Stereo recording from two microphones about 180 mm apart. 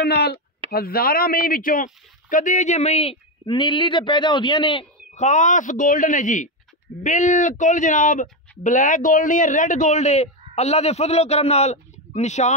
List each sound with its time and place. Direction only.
0.0 s speech: 65° left (ahead or behind); by 4.8 s 25° left (ahead or behind)
5.1 s speech: 40° left (ahead or behind)